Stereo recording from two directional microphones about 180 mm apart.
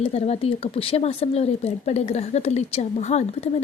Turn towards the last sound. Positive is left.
turn(degrees=35)  # may be behind; listen again after turning